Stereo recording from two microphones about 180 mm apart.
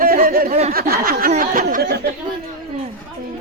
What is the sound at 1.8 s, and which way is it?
Speech, 65° right (ahead or behind).